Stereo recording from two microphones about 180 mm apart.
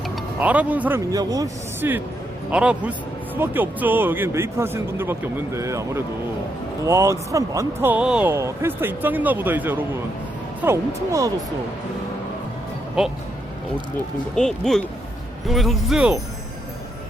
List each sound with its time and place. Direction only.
0.3 s speech: 10° right (ahead or behind)
14.3 s speech: 5° left (ahead or behind)